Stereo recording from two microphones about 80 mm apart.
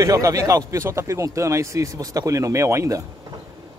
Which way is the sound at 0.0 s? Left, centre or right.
Right.